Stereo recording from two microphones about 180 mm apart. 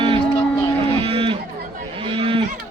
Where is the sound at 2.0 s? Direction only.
30° right (ahead or behind).